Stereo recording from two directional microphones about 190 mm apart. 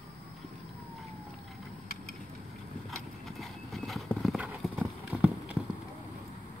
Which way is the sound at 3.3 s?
Centre (ahead or behind).